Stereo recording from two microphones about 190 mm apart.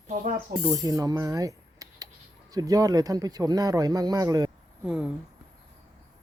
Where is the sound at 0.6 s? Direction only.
20° right (ahead or behind).